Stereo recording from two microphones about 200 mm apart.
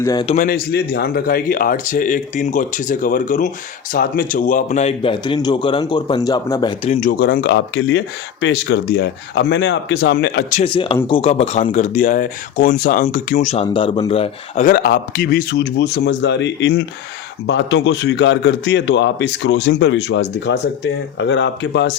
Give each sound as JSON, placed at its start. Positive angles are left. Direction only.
{"t": 0.0, "sound": "speech", "side_deg": 20}
{"t": 0.3, "sound": "speech", "side_deg": 45}
{"t": 7.0, "sound": "a man's voice", "side_deg": 45}
{"t": 10.5, "sound": "a man's voice", "side_deg": 30}